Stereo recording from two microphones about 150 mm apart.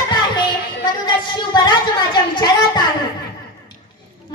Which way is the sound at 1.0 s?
30° left (ahead or behind).